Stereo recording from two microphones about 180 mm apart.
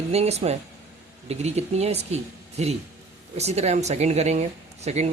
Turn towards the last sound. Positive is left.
turn(degrees=-40)  # may be behind; listen again after turning